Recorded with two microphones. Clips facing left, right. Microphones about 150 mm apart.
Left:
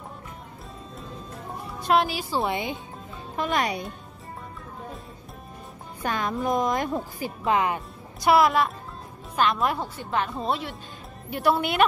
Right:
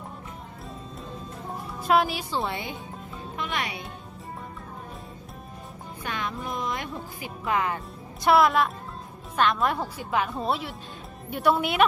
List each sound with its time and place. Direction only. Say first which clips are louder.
1.7 s a woman's voice: even; centre (ahead or behind)
2.4 s speech: left 4 dB; 20° left (ahead or behind)
3.3 s speech: left 6 dB; 40° left (ahead or behind)
6.0 s speech: left 6 dB; 40° left (ahead or behind)
7.4 s speech: left 3 dB; 20° left (ahead or behind)
8.2 s speech: left 1 dB; centre (ahead or behind)